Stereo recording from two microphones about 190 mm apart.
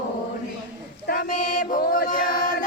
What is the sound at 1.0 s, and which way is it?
Chant, 45° left (ahead or behind).